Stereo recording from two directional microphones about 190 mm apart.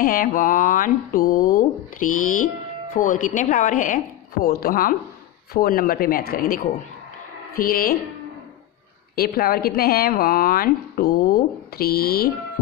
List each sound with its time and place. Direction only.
0.0 s speech: 45° left (ahead or behind)
9.1 s speech: 50° left (ahead or behind)